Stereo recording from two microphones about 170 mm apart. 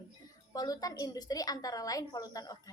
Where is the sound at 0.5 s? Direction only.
20° left (ahead or behind).